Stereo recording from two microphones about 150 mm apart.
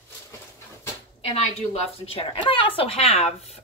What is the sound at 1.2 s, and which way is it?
Speech, 40° left (ahead or behind).